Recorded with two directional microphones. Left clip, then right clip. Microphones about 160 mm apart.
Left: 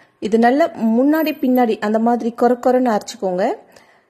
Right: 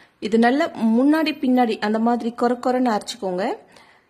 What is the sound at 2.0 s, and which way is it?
A woman's voice, 15° left (ahead or behind).